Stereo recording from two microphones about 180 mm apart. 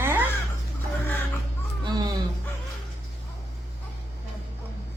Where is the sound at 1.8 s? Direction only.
25° right (ahead or behind).